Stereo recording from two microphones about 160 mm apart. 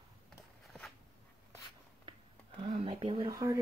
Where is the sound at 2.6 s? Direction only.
35° right (ahead or behind).